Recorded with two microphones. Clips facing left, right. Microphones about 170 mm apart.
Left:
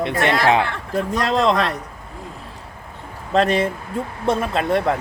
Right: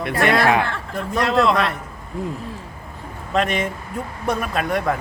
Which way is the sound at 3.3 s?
35° left (ahead or behind).